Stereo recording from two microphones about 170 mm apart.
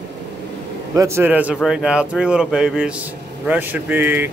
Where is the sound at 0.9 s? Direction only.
15° right (ahead or behind).